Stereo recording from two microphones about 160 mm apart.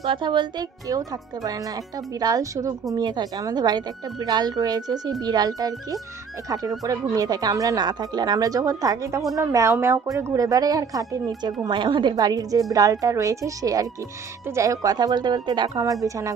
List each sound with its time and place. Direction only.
0.1 s a woman's voice: 30° right (ahead or behind)